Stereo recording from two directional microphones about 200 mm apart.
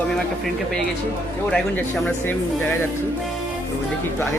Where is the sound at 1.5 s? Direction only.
5° left (ahead or behind).